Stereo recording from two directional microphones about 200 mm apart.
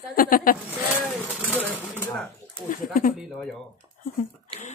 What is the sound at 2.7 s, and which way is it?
Speech, 45° left (ahead or behind).